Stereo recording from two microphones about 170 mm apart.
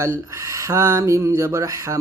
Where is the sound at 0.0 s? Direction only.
15° right (ahead or behind).